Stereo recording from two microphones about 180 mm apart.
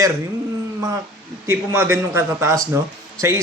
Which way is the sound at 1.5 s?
15° right (ahead or behind).